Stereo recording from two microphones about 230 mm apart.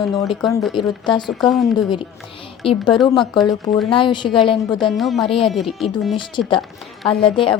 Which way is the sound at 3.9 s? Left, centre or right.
Left.